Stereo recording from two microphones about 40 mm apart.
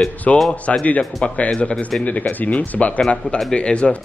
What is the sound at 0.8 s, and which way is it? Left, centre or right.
Speech, left.